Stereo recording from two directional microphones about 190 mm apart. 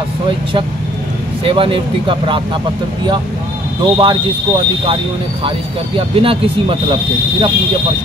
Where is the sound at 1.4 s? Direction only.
30° right (ahead or behind).